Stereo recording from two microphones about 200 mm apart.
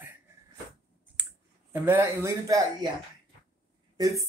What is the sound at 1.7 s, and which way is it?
Speech, 10° right (ahead or behind).